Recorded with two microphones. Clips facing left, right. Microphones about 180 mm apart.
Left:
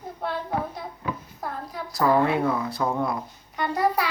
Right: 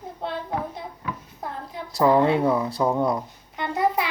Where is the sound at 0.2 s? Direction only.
20° right (ahead or behind).